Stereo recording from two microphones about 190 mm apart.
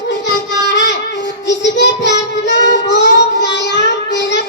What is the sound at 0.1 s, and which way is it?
Child singing, 65° left (ahead or behind).